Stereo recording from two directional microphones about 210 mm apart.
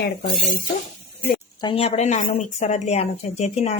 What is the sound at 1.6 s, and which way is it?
Speech, 25° left (ahead or behind).